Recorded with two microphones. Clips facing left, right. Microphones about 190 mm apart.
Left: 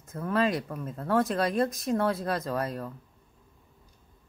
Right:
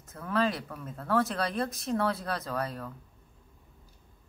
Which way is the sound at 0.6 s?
20° left (ahead or behind).